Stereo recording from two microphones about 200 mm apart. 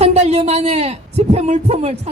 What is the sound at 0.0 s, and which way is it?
A woman's voice, 30° right (ahead or behind).